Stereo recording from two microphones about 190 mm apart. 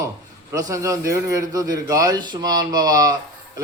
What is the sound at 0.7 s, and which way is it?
A man's voice, 15° right (ahead or behind).